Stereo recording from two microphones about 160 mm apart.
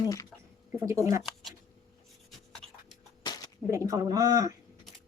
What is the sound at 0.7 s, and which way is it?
Speech, 20° right (ahead or behind).